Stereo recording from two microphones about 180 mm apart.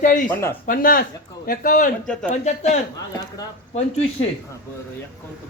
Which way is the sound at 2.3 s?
40° left (ahead or behind).